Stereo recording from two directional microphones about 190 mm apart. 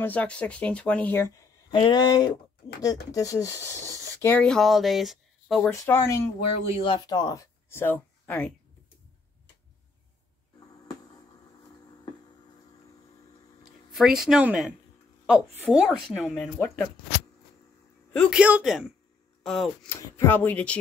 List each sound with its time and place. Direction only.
0.0 s speech: 5° left (ahead or behind)
1.7 s speech: 25° left (ahead or behind); by 5.7 s centre (ahead or behind)
5.7 s speech: 15° left (ahead or behind)
6.8 s speech: 25° left (ahead or behind); by 8.5 s 5° left (ahead or behind)
13.9 s speech: centre (ahead or behind)
16.5 s speech: 10° left (ahead or behind)
18.1 s speech: 5° left (ahead or behind)